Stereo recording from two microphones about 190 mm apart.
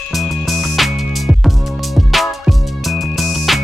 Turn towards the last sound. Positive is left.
turn(degrees=0)  # may be behind; listen again after turning